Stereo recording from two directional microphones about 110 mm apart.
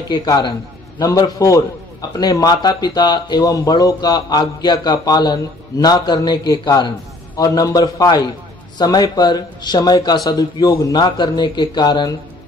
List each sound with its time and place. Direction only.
0.1 s a man's voice: 40° left (ahead or behind)